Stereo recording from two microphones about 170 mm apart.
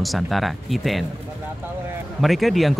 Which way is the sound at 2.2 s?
Centre (ahead or behind).